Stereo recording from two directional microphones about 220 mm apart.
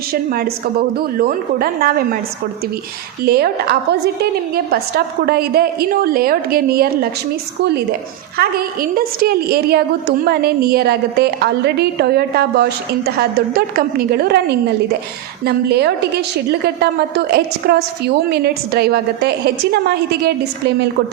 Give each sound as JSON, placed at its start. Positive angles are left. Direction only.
{"t": 0.1, "sound": "a woman's voice", "side_deg": -45}
{"t": 3.2, "sound": "a woman's voice", "side_deg": -45}
{"t": 8.4, "sound": "a woman's voice", "side_deg": -45}